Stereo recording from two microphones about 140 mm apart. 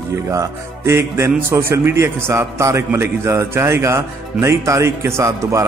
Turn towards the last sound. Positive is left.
turn(degrees=-20)  # may be behind; listen again after turning